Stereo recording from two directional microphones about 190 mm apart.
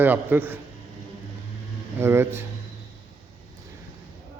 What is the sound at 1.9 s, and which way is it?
Speech, 10° right (ahead or behind).